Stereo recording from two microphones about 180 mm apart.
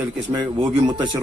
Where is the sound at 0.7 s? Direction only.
25° right (ahead or behind).